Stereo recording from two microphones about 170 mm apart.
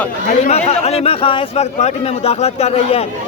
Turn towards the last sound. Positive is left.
turn(degrees=40)  # may be behind; listen again after turning